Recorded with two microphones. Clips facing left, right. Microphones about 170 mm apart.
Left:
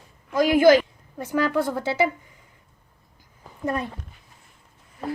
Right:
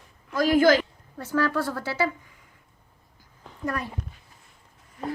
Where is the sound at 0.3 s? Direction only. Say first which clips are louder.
Left 3 dB; 15° left (ahead or behind).